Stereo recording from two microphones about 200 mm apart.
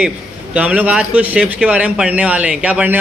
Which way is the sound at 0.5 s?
5° right (ahead or behind).